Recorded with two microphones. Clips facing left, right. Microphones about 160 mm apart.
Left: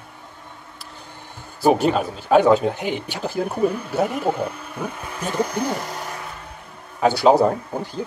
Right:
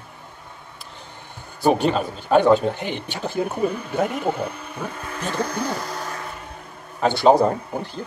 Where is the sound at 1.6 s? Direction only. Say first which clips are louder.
Left 1 dB; 5° left (ahead or behind).